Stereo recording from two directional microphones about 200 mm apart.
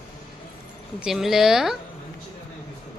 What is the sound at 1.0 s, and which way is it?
Speech, centre (ahead or behind).